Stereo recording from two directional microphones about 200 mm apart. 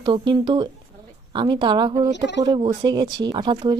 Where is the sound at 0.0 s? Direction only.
20° right (ahead or behind).